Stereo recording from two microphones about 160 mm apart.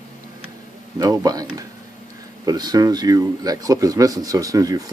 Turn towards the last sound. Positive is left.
turn(degrees=-20)  # may be behind; listen again after turning